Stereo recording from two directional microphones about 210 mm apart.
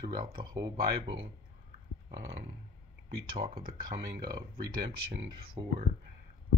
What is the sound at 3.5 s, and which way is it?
Speech, 45° right (ahead or behind).